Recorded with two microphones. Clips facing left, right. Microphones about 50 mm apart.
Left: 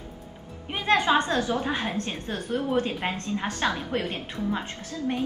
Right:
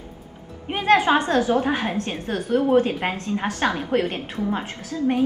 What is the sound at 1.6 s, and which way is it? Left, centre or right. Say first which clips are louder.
A woman's voice: right 5 dB; right.